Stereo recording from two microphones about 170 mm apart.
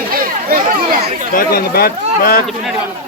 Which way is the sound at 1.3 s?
60° left (ahead or behind).